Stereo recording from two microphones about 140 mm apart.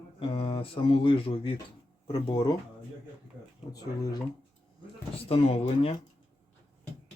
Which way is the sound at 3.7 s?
25° left (ahead or behind).